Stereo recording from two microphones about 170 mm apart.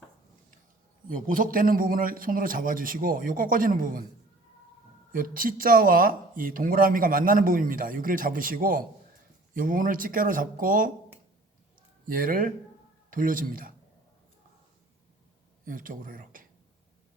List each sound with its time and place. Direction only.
1.0 s speech: 55° right (ahead or behind)
5.1 s speech: 55° right (ahead or behind)
12.0 s speech: 55° right (ahead or behind)
15.6 s speech: 55° right (ahead or behind)